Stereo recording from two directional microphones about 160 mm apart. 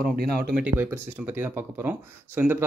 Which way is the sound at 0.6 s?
10° right (ahead or behind).